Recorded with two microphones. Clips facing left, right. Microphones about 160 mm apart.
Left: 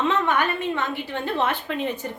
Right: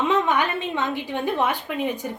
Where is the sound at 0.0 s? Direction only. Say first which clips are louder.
Right 1 dB; 15° right (ahead or behind).